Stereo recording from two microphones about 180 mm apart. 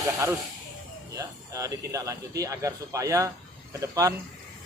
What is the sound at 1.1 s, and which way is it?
A man's voice, 20° right (ahead or behind).